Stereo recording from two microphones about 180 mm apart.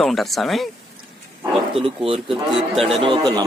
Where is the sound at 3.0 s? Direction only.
25° right (ahead or behind).